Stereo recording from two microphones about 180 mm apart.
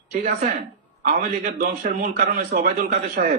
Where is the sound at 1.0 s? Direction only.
45° right (ahead or behind).